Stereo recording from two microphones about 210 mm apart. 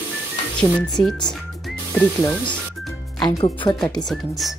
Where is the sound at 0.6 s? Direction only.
5° left (ahead or behind).